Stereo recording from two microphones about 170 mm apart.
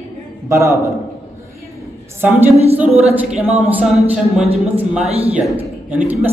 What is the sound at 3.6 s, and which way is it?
Speech, centre (ahead or behind).